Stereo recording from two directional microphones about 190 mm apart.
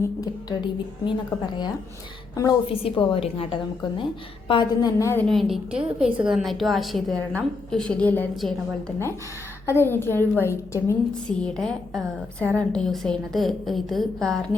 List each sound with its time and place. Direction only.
2.3 s a woman's voice: 20° left (ahead or behind)
5.3 s a woman's voice: centre (ahead or behind)
9.6 s a woman's voice: 10° left (ahead or behind)